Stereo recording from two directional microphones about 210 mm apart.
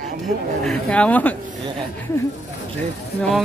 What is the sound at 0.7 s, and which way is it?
Speech, 5° left (ahead or behind).